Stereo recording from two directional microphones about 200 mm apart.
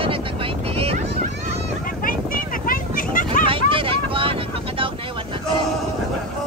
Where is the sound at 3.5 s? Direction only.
25° right (ahead or behind).